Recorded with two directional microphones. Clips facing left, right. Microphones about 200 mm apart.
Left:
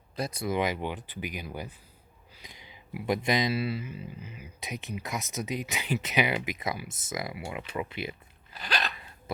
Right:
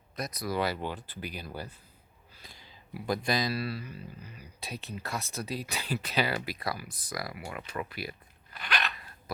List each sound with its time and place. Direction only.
0.2 s speech: 30° left (ahead or behind)
8.5 s dog: 35° left (ahead or behind)